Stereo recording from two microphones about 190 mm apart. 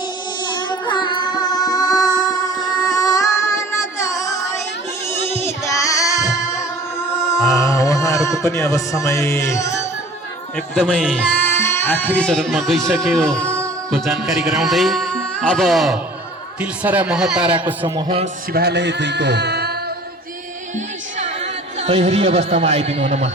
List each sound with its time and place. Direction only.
0.4 s music: 25° left (ahead or behind)
2.8 s child singing: 20° left (ahead or behind)
5.6 s music: 15° left (ahead or behind)
7.4 s a sound: 15° left (ahead or behind)
10.8 s speech: centre (ahead or behind)
17.9 s a man's voice: 30° right (ahead or behind)
18.5 s speech: 60° right (ahead or behind)
20.7 s speech: 35° right (ahead or behind)